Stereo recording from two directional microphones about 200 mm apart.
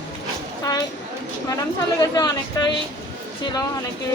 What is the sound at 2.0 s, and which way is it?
Speech, 20° left (ahead or behind).